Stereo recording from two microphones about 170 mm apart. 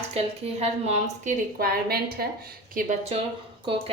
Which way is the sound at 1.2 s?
60° right (ahead or behind).